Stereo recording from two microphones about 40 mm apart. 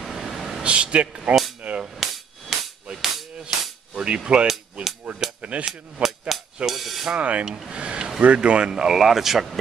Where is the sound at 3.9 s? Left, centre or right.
Right.